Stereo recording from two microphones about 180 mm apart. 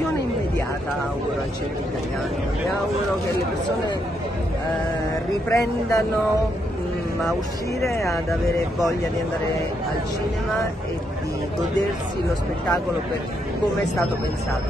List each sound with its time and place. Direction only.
5.5 s speech: 20° left (ahead or behind)
7.8 s speech: 15° left (ahead or behind)